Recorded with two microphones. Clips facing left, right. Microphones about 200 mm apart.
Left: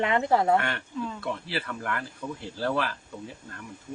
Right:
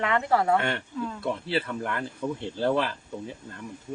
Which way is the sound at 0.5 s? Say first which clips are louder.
Right 1 dB; 25° right (ahead or behind).